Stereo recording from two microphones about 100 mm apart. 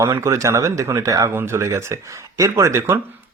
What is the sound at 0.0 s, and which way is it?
Speech, 30° right (ahead or behind).